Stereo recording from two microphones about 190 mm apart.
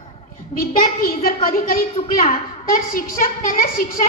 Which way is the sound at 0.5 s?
50° left (ahead or behind).